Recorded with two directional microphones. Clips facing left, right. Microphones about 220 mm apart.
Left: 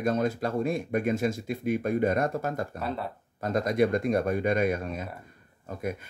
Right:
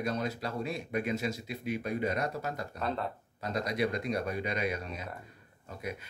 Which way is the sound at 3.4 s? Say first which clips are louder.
Left 7 dB; 50° left (ahead or behind).